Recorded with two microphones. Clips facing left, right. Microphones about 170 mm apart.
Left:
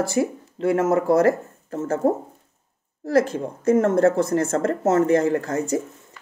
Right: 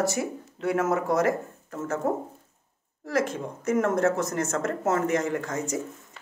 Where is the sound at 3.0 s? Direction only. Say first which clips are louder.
Left 7 dB; 35° left (ahead or behind).